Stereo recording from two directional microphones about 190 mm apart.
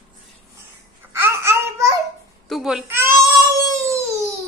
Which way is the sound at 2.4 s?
Centre (ahead or behind).